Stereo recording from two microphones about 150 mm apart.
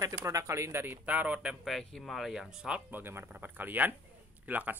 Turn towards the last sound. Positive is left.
turn(degrees=-10)  # may be behind; listen again after turning